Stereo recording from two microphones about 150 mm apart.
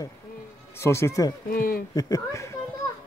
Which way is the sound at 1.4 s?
75° left (ahead or behind).